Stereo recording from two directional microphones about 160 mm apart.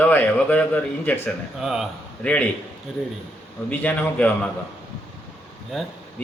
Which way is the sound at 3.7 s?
10° left (ahead or behind).